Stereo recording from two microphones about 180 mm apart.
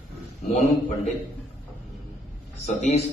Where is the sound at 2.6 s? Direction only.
40° left (ahead or behind).